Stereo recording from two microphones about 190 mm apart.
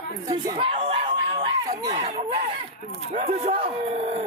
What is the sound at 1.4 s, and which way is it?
Music, 20° right (ahead or behind).